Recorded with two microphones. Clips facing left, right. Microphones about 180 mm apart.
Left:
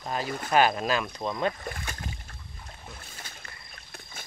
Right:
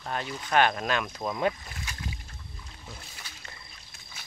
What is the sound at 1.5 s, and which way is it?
Rowboat, 55° left (ahead or behind).